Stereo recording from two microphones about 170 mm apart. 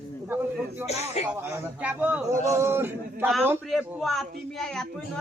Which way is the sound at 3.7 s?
Centre (ahead or behind).